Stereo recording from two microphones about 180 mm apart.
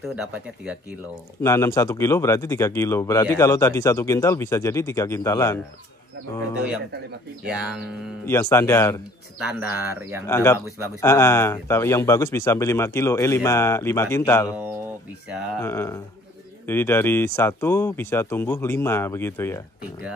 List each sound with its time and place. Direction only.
0.0 s speech: 5° right (ahead or behind)
1.4 s speech: 15° left (ahead or behind)
8.3 s speech: 15° left (ahead or behind)
9.5 s speech: 10° right (ahead or behind)
10.2 s speech: 15° left (ahead or behind)
15.2 s speech: 5° right (ahead or behind)
15.6 s speech: 15° left (ahead or behind)